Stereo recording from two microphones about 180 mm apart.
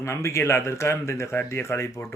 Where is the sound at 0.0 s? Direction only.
15° left (ahead or behind).